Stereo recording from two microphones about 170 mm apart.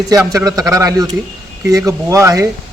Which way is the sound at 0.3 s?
20° right (ahead or behind).